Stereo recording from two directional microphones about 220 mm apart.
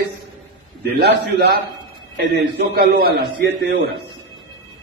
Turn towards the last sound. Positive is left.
turn(degrees=-50)  # may be behind; listen again after turning